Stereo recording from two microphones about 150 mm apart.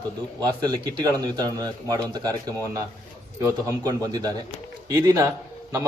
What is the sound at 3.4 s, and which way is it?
A man's voice, 25° right (ahead or behind).